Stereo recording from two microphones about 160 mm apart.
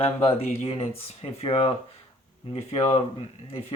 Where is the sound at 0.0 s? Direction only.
35° left (ahead or behind).